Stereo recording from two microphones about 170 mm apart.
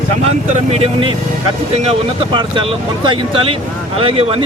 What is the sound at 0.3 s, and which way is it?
Speech, 35° right (ahead or behind).